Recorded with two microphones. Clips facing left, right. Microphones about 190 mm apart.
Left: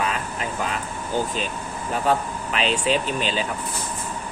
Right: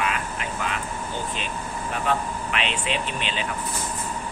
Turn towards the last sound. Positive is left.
turn(degrees=40)  # may be behind; listen again after turning